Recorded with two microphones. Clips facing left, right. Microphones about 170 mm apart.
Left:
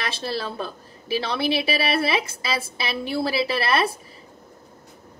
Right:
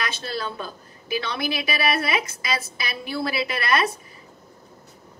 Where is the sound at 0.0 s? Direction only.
30° left (ahead or behind).